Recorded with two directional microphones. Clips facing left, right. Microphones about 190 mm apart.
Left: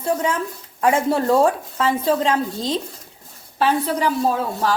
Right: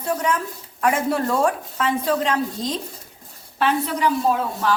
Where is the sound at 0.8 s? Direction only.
25° left (ahead or behind).